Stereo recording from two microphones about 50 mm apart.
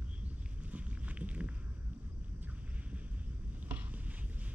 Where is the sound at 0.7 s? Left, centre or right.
Right.